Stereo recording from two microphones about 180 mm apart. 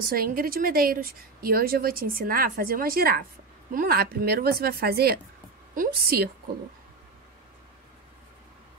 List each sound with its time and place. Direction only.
0.1 s a woman's voice: 55° right (ahead or behind)